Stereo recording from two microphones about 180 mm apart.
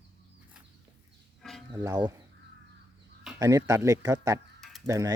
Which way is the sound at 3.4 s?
20° right (ahead or behind).